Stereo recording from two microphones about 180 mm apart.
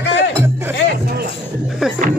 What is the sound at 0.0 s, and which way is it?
Music, 80° left.